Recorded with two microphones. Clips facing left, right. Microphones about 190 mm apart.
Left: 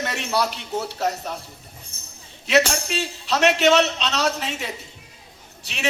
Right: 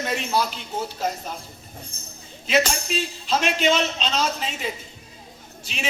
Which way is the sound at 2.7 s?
70° left (ahead or behind).